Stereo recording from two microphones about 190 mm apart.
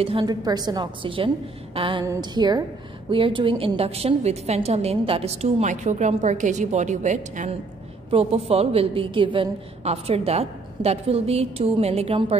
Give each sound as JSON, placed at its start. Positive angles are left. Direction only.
{"t": 0.0, "sound": "a woman's voice", "side_deg": -25}